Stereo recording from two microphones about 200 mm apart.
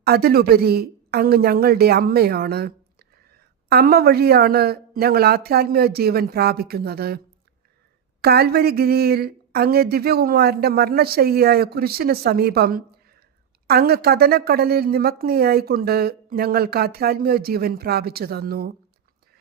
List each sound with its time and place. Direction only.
0.0 s speech: 50° right (ahead or behind)
8.2 s speech: 50° right (ahead or behind)